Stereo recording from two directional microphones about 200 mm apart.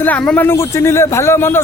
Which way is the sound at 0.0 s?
5° left (ahead or behind).